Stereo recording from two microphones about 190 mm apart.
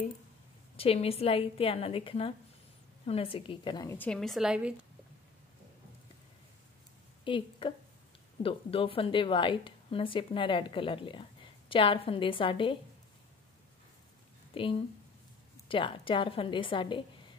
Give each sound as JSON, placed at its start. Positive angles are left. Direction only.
{"t": 0.7, "sound": "a woman's voice", "side_deg": 30}
{"t": 7.2, "sound": "a woman's voice", "side_deg": 25}
{"t": 14.5, "sound": "a woman's voice", "side_deg": 30}